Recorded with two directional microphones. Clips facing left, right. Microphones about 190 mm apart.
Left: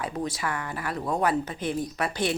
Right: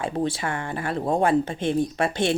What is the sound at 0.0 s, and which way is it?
Speech, 30° right (ahead or behind).